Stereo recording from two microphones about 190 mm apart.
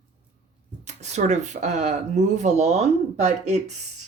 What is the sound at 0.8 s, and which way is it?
Speech, 35° right (ahead or behind).